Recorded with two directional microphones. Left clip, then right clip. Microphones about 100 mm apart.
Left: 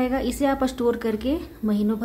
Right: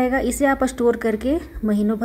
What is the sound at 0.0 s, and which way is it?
Speech, 40° right (ahead or behind).